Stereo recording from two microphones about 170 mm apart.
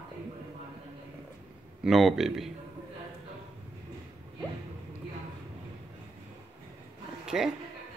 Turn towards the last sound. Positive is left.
turn(degrees=-5)  # may be behind; listen again after turning